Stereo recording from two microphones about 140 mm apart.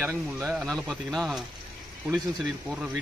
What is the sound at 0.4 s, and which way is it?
Speech, centre (ahead or behind).